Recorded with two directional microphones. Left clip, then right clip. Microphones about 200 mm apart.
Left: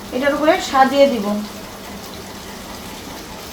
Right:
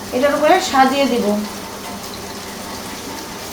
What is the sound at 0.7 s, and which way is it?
Speech, 55° left (ahead or behind).